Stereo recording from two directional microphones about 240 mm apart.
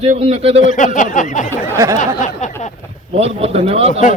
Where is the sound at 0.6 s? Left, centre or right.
Left.